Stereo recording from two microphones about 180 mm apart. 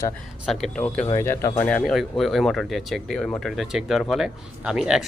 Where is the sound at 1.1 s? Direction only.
15° left (ahead or behind).